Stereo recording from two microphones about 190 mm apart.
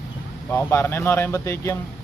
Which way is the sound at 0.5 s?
15° left (ahead or behind).